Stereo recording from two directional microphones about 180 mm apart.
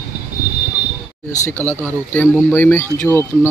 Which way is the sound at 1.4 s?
15° left (ahead or behind).